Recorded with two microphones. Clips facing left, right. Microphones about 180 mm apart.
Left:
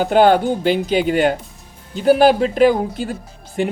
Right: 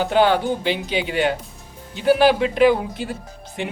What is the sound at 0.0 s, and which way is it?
Speech, 45° left (ahead or behind).